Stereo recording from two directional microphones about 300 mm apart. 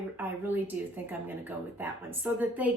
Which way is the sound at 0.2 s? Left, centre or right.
Centre.